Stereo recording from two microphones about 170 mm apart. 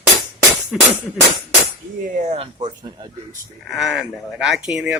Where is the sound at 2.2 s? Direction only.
35° right (ahead or behind).